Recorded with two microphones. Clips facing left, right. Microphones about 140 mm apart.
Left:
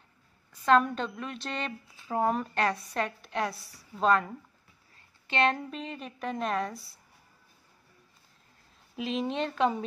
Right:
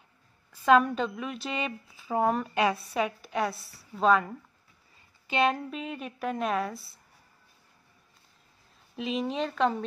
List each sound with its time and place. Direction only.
0.5 s a woman's voice: 5° right (ahead or behind)
3.5 s a woman's voice: 20° left (ahead or behind)
3.9 s a woman's voice: centre (ahead or behind)
8.9 s a woman's voice: centre (ahead or behind)